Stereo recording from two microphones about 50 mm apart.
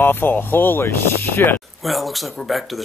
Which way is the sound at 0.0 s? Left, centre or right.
Left.